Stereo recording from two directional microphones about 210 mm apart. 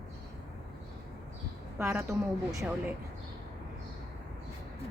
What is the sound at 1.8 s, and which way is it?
Speech, 15° right (ahead or behind).